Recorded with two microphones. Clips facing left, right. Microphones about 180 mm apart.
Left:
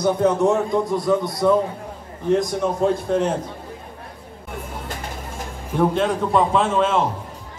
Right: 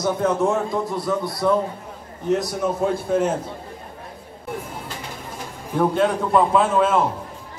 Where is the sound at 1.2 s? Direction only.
20° left (ahead or behind).